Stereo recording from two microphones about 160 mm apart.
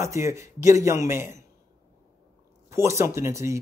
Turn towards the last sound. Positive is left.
turn(degrees=-15)  # may be behind; listen again after turning